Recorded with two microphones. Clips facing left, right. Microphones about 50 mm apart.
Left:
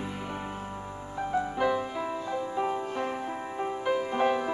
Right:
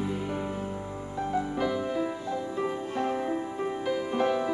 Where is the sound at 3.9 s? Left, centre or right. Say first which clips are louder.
Left 1 dB; left.